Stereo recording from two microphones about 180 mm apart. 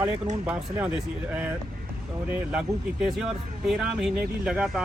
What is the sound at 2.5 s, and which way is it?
Speech, 5° right (ahead or behind).